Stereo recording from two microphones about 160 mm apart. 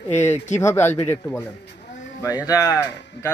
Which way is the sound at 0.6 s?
15° left (ahead or behind).